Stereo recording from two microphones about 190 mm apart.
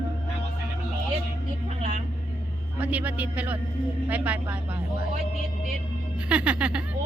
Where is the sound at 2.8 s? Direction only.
10° right (ahead or behind).